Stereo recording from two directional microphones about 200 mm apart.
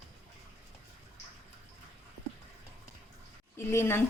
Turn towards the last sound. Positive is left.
turn(degrees=10)  # may be behind; listen again after turning